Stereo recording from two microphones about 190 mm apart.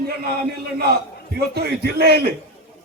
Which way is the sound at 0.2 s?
55° right (ahead or behind).